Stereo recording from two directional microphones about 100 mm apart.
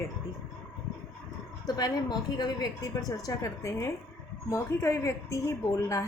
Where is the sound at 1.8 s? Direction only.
40° left (ahead or behind).